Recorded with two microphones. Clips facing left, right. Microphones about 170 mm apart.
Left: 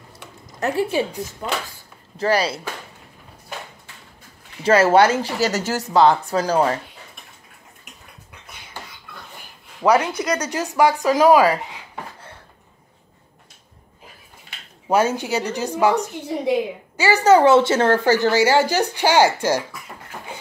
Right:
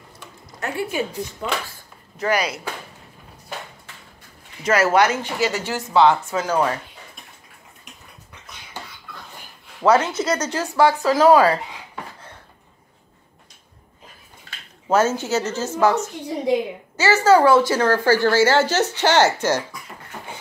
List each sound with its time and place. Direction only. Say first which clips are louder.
0.6 s speech: left 4 dB; 35° left (ahead or behind)
4.6 s speech: left 3 dB; 30° left (ahead or behind)
9.8 s a woman's voice: even; 15° left (ahead or behind)
14.9 s a woman's voice: even; 15° left (ahead or behind)